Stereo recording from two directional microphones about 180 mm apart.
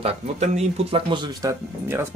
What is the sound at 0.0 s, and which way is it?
Speech, 35° right (ahead or behind).